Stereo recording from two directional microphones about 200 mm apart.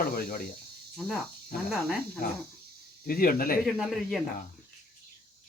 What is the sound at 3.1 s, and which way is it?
Speech, 45° left (ahead or behind).